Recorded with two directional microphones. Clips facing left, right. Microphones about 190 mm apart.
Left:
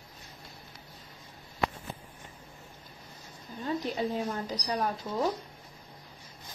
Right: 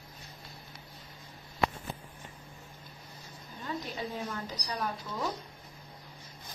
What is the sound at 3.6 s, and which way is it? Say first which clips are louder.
Speech: left 6 dB; 40° left (ahead or behind).